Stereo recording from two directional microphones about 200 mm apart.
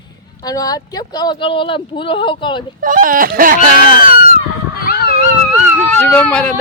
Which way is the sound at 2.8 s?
45° right (ahead or behind).